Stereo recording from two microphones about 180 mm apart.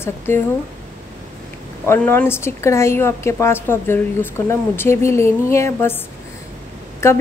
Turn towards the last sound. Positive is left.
turn(degrees=15)  # may be behind; listen again after turning